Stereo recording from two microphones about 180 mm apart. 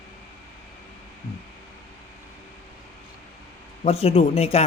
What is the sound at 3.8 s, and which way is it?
Speech, 35° left (ahead or behind).